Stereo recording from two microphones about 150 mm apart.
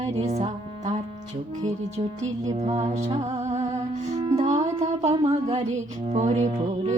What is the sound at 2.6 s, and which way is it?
Music, 50° right (ahead or behind).